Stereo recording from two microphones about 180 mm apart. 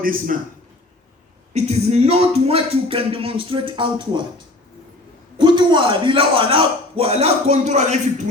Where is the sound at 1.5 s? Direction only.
35° right (ahead or behind).